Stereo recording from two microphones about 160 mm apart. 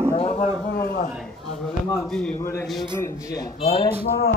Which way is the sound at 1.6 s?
5° left (ahead or behind).